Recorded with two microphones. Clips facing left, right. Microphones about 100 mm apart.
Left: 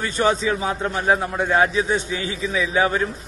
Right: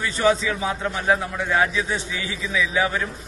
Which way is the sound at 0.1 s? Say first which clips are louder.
Even; 45° left (ahead or behind).